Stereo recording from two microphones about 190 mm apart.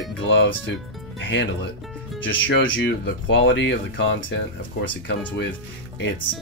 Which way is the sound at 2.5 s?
75° left (ahead or behind).